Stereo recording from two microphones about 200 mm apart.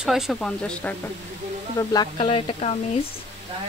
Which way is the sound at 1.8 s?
20° left (ahead or behind).